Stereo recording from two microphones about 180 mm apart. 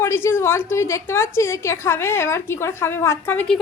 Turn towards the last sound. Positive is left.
turn(degrees=10)  # may be behind; listen again after turning